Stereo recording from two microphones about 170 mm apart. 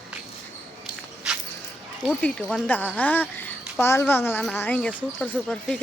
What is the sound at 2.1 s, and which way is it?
Speech, 5° left (ahead or behind).